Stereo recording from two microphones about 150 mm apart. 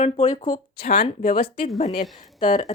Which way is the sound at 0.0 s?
50° left (ahead or behind).